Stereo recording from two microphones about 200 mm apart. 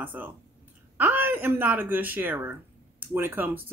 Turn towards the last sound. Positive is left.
turn(degrees=-10)  # may be behind; listen again after turning